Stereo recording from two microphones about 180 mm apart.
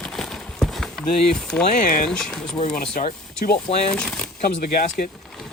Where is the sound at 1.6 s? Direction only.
45° left (ahead or behind).